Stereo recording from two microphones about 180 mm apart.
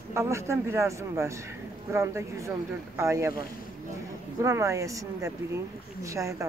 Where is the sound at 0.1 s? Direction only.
15° right (ahead or behind).